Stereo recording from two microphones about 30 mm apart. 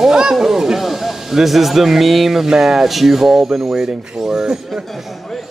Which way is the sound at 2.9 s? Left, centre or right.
Centre.